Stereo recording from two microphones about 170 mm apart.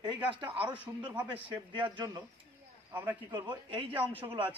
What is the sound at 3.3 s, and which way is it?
Speech, 25° right (ahead or behind).